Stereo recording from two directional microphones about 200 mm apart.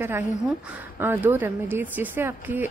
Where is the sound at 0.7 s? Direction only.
10° right (ahead or behind).